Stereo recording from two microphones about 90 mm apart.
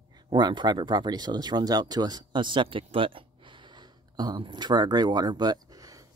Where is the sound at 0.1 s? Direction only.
55° right (ahead or behind).